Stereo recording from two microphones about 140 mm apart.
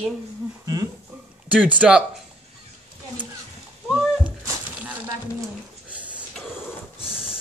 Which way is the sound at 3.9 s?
5° right (ahead or behind).